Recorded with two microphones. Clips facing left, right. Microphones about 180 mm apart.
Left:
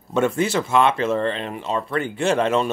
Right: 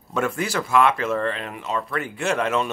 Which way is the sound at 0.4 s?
25° left (ahead or behind).